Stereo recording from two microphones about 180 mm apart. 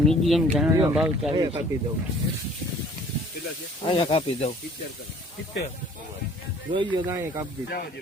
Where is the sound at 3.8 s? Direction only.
30° left (ahead or behind).